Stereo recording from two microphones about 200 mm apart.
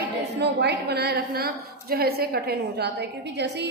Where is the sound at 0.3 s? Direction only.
55° right (ahead or behind).